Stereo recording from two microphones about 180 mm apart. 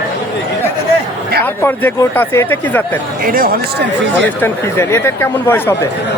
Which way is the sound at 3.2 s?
55° right (ahead or behind).